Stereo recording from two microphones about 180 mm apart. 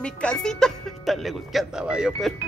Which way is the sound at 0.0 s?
5° left (ahead or behind).